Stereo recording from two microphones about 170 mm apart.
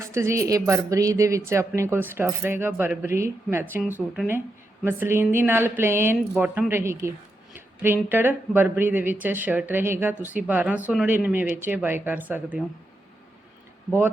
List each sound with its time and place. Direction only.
0.0 s a woman's voice: 15° right (ahead or behind)